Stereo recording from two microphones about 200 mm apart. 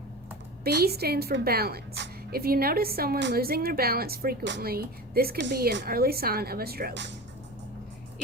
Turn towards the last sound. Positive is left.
turn(degrees=-55)  # may be behind; listen again after turning